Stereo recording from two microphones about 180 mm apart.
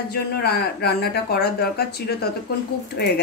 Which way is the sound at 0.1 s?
60° left (ahead or behind).